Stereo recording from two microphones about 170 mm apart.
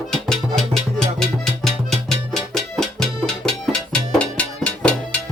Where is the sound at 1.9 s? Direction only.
Centre (ahead or behind).